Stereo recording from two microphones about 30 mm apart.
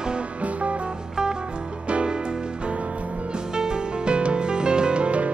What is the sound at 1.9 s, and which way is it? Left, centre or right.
Music, right.